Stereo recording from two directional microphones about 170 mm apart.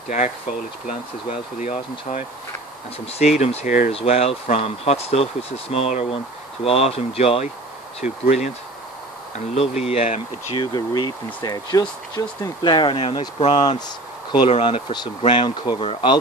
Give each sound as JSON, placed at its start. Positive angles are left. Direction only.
{"t": 1.6, "sound": "speech", "side_deg": 40}
{"t": 3.3, "sound": "speech", "side_deg": 45}
{"t": 9.6, "sound": "speech", "side_deg": 35}